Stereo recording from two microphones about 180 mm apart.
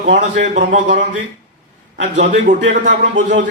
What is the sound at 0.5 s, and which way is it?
Speech, 40° right (ahead or behind).